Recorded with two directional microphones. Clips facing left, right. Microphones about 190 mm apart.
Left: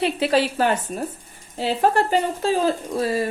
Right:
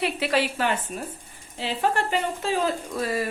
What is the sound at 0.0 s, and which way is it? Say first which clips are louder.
Speech: left 4 dB; 30° left (ahead or behind).